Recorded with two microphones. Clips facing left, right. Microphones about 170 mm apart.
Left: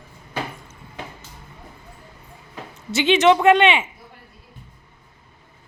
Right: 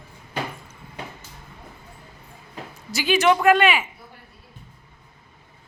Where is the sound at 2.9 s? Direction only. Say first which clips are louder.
Left 4 dB; 25° left (ahead or behind).